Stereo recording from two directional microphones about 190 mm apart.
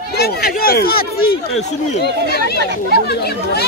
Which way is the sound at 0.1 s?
55° left (ahead or behind).